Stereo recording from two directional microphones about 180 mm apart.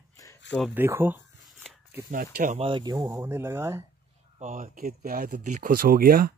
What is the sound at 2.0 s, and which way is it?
Speech, 50° right (ahead or behind).